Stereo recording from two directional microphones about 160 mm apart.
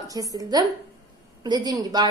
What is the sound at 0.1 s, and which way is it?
A woman's voice, 20° right (ahead or behind).